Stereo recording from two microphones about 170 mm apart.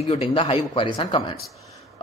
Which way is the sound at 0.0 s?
35° left (ahead or behind).